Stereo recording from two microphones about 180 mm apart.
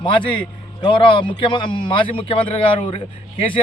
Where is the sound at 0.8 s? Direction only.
25° left (ahead or behind).